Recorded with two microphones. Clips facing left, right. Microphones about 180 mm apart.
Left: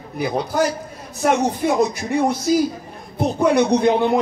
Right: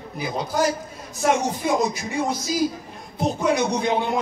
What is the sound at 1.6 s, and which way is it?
A man's voice, 55° left (ahead or behind).